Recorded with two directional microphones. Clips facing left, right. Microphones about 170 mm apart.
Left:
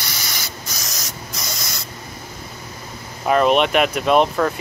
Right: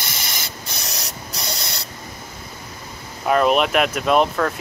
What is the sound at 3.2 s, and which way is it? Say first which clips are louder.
Speech: left 1 dB; centre (ahead or behind).